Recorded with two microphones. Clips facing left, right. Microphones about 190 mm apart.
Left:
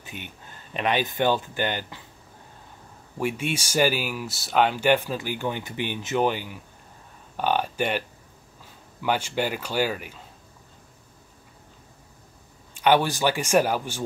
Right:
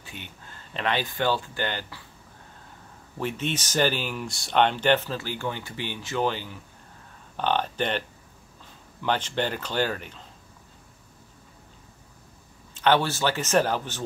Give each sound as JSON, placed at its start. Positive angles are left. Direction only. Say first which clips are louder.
{"t": 0.0, "sound": "speech", "louder": "left 3 dB", "side_deg": 15}
{"t": 3.2, "sound": "speech", "louder": "left 2 dB", "side_deg": 10}
{"t": 9.0, "sound": "speech", "louder": "left 1 dB", "side_deg": 10}
{"t": 12.7, "sound": "speech", "louder": "left 2 dB", "side_deg": 10}